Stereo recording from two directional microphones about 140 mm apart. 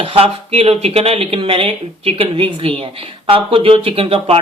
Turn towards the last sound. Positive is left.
turn(degrees=-40)  # may be behind; listen again after turning